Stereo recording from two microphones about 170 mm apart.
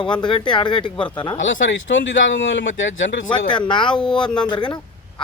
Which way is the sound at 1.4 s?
90° left.